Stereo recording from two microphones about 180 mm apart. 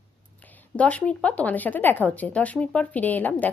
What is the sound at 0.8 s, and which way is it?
Speech, 10° left (ahead or behind).